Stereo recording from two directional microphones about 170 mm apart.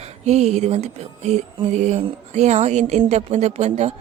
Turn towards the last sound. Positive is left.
turn(degrees=-40)  # may be behind; listen again after turning